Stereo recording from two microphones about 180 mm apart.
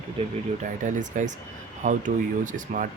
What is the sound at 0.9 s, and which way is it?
Speech, 45° right (ahead or behind).